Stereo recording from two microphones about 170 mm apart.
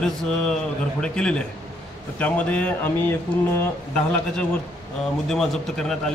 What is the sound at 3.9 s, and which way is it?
A man's voice, 5° left (ahead or behind).